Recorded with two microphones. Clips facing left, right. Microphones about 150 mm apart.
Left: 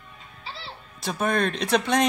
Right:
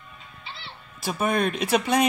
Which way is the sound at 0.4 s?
35° left (ahead or behind).